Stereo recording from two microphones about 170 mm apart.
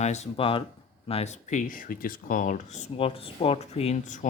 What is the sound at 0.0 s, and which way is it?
Speech, 40° left (ahead or behind).